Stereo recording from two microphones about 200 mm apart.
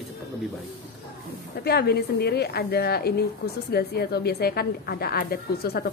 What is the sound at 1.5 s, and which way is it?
A woman's voice, 55° left (ahead or behind).